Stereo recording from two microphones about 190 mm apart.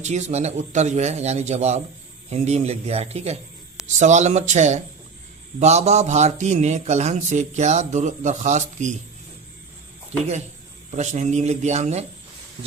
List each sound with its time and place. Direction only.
0.0 s a man's voice: 35° right (ahead or behind)
10.9 s a man's voice: 40° right (ahead or behind)